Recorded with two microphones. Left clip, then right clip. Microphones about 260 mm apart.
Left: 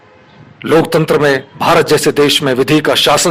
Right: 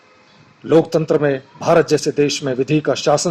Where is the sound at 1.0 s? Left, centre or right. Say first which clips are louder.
Left 6 dB; left.